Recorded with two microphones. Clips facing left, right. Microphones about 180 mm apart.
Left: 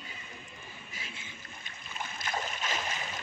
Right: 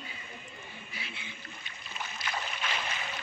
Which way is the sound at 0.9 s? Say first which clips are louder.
Right 3 dB; 45° left (ahead or behind).